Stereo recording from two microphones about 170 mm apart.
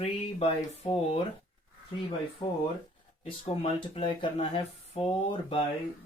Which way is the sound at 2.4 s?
35° left (ahead or behind).